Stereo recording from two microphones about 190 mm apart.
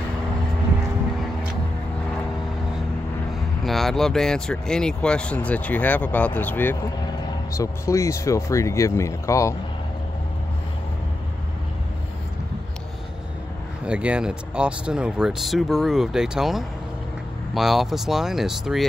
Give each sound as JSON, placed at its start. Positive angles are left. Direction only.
{"t": 3.6, "sound": "speech", "side_deg": 0}
{"t": 13.8, "sound": "speech", "side_deg": -5}